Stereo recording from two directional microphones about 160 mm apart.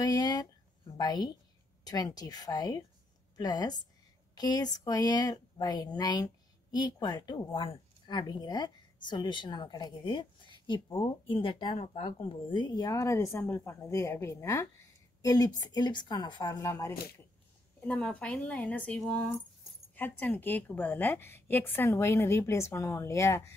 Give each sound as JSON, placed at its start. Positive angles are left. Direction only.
{"t": 0.0, "sound": "a woman's voice", "side_deg": 25}
{"t": 17.7, "sound": "a woman's voice", "side_deg": 5}